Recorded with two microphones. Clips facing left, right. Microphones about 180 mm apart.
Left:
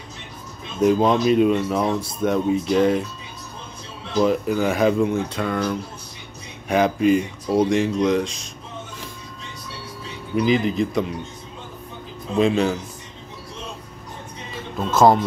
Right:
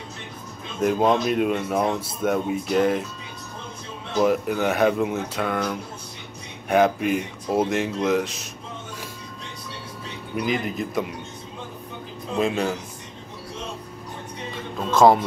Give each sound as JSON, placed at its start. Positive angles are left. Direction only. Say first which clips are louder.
{"t": 0.7, "sound": "speech", "louder": "left 3 dB", "side_deg": 0}
{"t": 4.2, "sound": "speech", "louder": "left 2 dB", "side_deg": -5}
{"t": 7.1, "sound": "speech", "louder": "left 5 dB", "side_deg": -5}
{"t": 10.3, "sound": "a man's voice", "louder": "left 6 dB", "side_deg": -50}
{"t": 10.7, "sound": "speech", "louder": "left 5 dB", "side_deg": -5}
{"t": 12.4, "sound": "speech", "louder": "left 5 dB", "side_deg": 0}
{"t": 14.9, "sound": "speech", "louder": "even", "side_deg": 0}